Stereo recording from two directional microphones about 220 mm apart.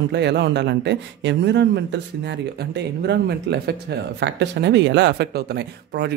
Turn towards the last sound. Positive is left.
turn(degrees=-50)  # may be behind; listen again after turning